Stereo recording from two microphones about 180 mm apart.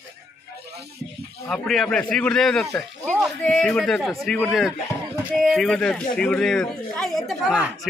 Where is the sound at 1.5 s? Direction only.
Centre (ahead or behind).